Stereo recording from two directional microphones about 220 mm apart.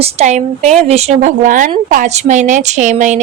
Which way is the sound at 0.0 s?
30° right (ahead or behind).